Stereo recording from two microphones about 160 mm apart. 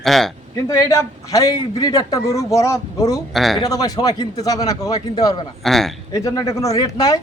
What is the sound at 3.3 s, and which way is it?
Speech, centre (ahead or behind).